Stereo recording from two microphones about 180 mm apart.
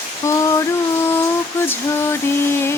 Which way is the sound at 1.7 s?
15° left (ahead or behind).